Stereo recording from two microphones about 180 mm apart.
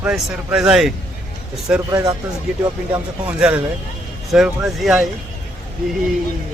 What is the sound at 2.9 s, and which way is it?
A man's voice, 5° right (ahead or behind).